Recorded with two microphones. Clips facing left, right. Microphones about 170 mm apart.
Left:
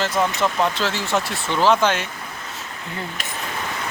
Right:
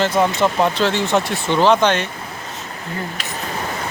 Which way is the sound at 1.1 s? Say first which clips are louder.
Right 5 dB; 25° right (ahead or behind).